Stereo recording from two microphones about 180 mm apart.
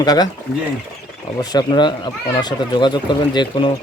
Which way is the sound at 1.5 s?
25° left (ahead or behind).